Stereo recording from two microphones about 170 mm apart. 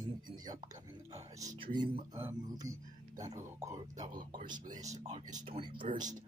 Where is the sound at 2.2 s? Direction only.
15° right (ahead or behind).